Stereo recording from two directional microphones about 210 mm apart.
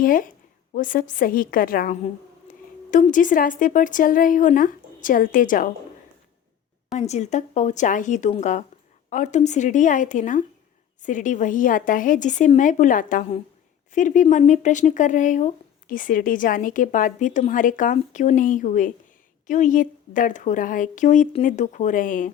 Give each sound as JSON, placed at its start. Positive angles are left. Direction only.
{"t": 0.0, "sound": "a woman's voice", "side_deg": 40}
{"t": 6.9, "sound": "speech", "side_deg": 30}